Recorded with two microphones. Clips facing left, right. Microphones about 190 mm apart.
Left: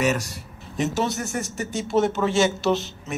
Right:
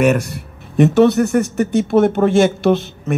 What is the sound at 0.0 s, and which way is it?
Speech, 55° right (ahead or behind).